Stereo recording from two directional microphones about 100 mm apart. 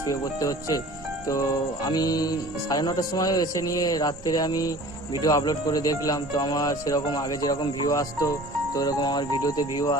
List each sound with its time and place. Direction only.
0.1 s music: 35° left (ahead or behind)